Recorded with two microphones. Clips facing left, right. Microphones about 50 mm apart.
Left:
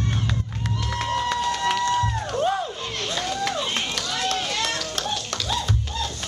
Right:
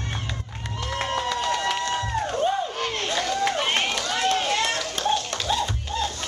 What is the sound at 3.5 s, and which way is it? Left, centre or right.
Run, right.